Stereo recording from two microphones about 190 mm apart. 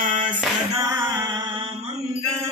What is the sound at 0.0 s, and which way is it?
Music, 45° right (ahead or behind).